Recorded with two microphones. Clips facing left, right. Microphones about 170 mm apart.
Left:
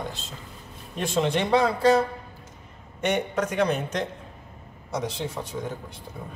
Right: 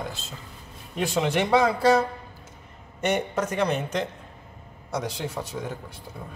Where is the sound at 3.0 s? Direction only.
5° right (ahead or behind).